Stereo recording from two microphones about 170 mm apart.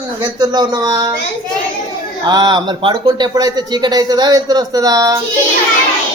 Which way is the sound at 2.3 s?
25° right (ahead or behind).